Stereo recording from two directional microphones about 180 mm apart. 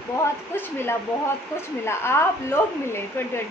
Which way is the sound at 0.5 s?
10° left (ahead or behind).